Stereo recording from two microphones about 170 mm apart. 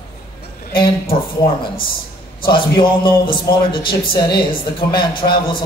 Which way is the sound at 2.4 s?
30° left (ahead or behind).